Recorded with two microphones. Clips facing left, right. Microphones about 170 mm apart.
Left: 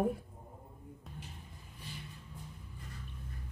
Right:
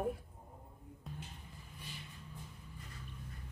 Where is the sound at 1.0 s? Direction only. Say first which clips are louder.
Right 3 dB; centre (ahead or behind).